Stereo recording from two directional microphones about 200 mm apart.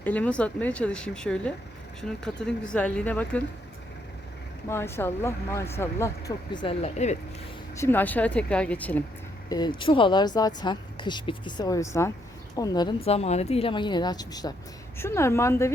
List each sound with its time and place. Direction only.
0.0 s speech: 10° left (ahead or behind)
4.7 s speech: 10° left (ahead or behind); by 7.2 s 35° left (ahead or behind)
7.8 s speech: 10° left (ahead or behind)
9.5 s speech: 20° left (ahead or behind)
13.1 s speech: 30° left (ahead or behind); by 15.7 s 15° left (ahead or behind)